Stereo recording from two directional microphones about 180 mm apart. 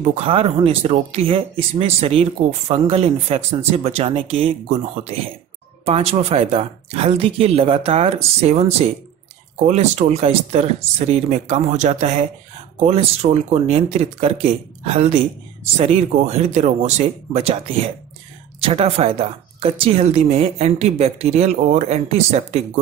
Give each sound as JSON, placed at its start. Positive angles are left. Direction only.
{"t": 0.0, "sound": "a woman's voice", "side_deg": -35}